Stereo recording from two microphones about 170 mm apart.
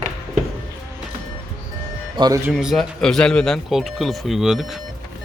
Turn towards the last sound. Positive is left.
turn(degrees=0)  # may be behind; listen again after turning